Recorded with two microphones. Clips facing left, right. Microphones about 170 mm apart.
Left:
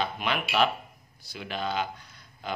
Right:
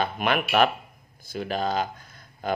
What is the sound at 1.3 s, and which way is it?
Speech, 45° right (ahead or behind).